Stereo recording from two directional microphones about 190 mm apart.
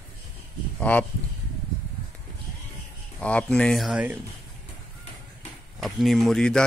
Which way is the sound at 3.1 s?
5° left (ahead or behind).